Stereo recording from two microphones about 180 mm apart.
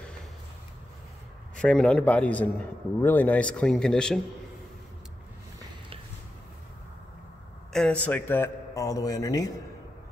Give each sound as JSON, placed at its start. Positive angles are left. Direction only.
{"t": 1.6, "sound": "a man's voice", "side_deg": 5}
{"t": 7.7, "sound": "a man's voice", "side_deg": 5}